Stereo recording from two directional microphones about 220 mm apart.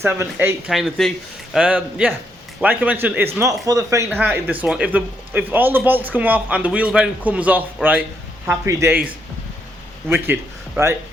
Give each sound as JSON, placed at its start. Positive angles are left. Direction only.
{"t": 0.0, "sound": "a man's voice", "side_deg": -10}